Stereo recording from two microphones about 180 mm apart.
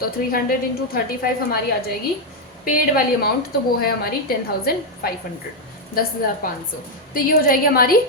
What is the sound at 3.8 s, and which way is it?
A woman's voice, 55° left (ahead or behind).